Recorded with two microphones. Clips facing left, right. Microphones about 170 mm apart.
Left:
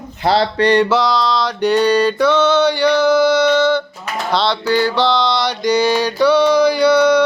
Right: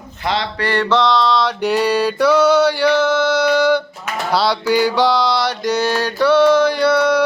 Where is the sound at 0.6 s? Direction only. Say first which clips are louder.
Left 7 dB; 20° left (ahead or behind).